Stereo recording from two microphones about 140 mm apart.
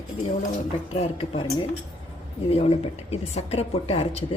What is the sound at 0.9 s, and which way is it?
Speech, 45° left (ahead or behind).